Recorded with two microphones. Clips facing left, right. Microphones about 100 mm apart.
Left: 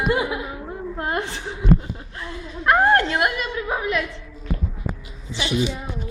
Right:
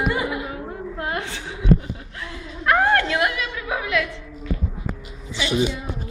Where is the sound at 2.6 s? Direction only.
35° left (ahead or behind).